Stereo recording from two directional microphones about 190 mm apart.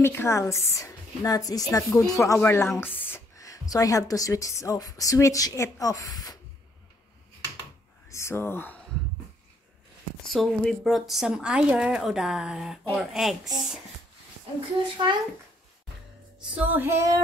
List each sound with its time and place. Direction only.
0.0 s a woman's voice: 10° left (ahead or behind)
8.1 s speech: 15° left (ahead or behind)
10.2 s speech: centre (ahead or behind)
15.0 s a child's voice: 20° right (ahead or behind)
16.3 s female singing: 5° right (ahead or behind)